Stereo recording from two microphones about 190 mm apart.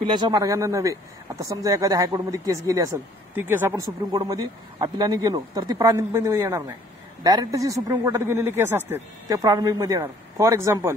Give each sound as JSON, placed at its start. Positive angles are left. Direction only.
{"t": 0.1, "sound": "a man's voice", "side_deg": -20}